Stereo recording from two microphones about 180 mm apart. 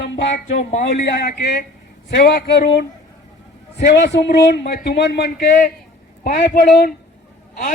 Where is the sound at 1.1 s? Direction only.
65° left (ahead or behind).